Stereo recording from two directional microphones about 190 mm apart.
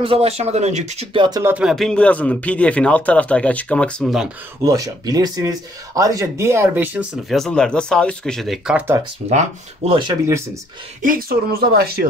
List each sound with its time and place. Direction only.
0.0 s speech: 30° right (ahead or behind)
1.4 s speech: 5° right (ahead or behind)
4.6 s speech: 20° right (ahead or behind)
9.3 s speech: 35° right (ahead or behind)
9.9 s speech: 20° right (ahead or behind)
11.0 s speech: 45° right (ahead or behind)